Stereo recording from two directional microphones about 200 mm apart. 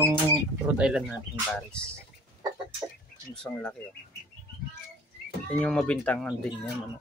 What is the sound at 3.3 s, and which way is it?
Speech, 5° left (ahead or behind).